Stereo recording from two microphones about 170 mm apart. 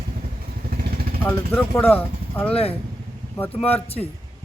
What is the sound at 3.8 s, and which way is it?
Speech, 35° left (ahead or behind).